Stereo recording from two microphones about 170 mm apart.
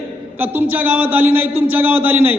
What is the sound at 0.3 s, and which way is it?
A man's voice, 10° right (ahead or behind).